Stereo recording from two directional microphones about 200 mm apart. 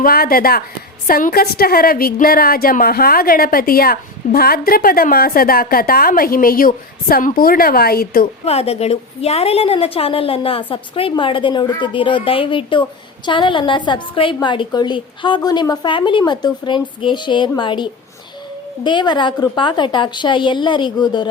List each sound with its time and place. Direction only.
0.0 s a woman's voice: 50° left (ahead or behind)
8.4 s a woman's voice: 30° left (ahead or behind)
18.9 s a woman's voice: 25° left (ahead or behind)